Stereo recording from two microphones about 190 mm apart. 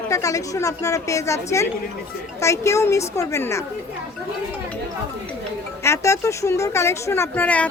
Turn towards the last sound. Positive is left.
turn(degrees=10)  # may be behind; listen again after turning